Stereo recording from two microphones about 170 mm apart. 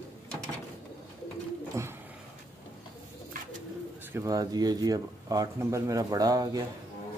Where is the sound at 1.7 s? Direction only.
15° right (ahead or behind).